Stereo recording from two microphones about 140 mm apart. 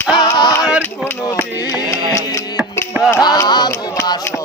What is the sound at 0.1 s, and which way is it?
Music, 30° left (ahead or behind).